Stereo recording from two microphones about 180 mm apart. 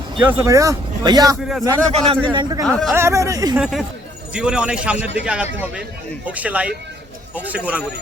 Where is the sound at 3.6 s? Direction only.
Centre (ahead or behind).